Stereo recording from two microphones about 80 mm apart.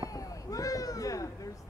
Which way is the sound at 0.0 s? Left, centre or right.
Left.